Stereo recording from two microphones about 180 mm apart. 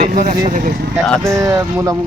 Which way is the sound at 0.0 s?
50° right (ahead or behind).